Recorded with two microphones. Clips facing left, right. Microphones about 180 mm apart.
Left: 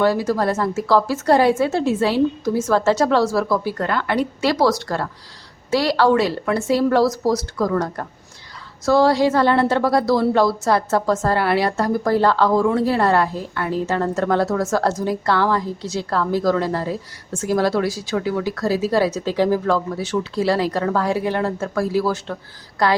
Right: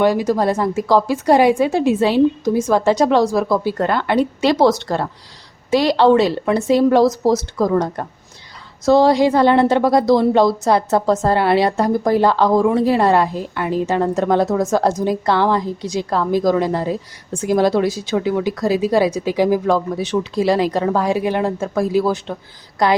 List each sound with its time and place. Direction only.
0.0 s a woman's voice: 15° right (ahead or behind)